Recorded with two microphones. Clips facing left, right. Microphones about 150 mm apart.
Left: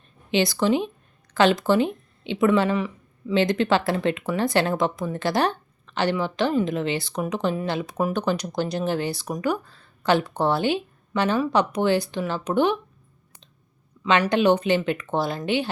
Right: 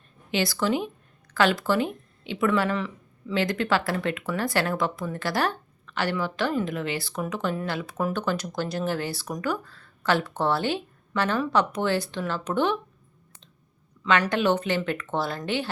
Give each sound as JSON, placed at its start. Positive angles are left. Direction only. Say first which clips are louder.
{"t": 0.3, "sound": "a woman's voice", "louder": "left 4 dB", "side_deg": 20}
{"t": 14.0, "sound": "speech", "louder": "left 3 dB", "side_deg": 15}